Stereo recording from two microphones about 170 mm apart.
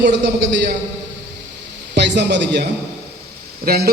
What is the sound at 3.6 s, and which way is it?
Speech, 65° right (ahead or behind).